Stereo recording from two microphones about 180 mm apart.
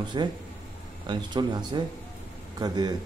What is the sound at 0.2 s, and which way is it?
Speech, 25° right (ahead or behind).